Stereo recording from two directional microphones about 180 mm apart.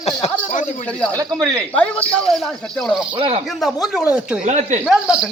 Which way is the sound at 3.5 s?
Centre (ahead or behind).